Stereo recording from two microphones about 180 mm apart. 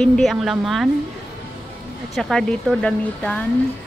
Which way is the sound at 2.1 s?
Centre (ahead or behind).